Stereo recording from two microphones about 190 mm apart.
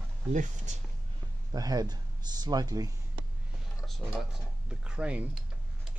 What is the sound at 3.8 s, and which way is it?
Speech, centre (ahead or behind).